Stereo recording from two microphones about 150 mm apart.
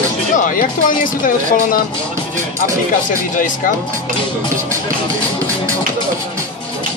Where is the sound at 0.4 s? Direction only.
65° left (ahead or behind).